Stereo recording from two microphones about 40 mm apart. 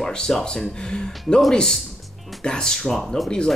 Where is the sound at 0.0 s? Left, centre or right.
Centre.